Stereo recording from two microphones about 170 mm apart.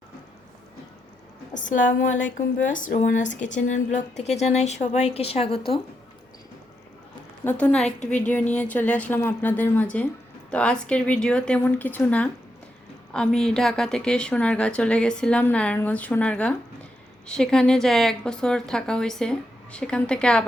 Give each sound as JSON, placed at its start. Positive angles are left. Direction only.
{"t": 1.5, "sound": "a woman's voice", "side_deg": 50}
{"t": 7.4, "sound": "a woman's voice", "side_deg": 10}